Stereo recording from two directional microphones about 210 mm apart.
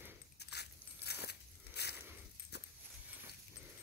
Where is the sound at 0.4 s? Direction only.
50° left (ahead or behind).